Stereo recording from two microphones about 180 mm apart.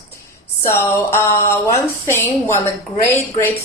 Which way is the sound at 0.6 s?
15° left (ahead or behind).